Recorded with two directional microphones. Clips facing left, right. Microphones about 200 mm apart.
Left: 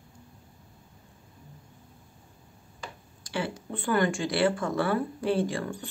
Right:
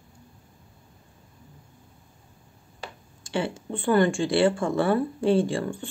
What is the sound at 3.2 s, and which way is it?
Speech, 25° right (ahead or behind).